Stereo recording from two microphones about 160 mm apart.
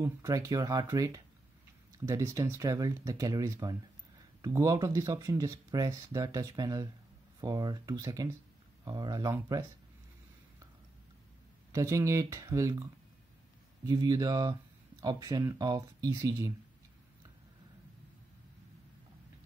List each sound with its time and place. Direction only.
0.0 s speech: 20° right (ahead or behind)
11.7 s speech: 20° right (ahead or behind)
13.8 s speech: 25° right (ahead or behind)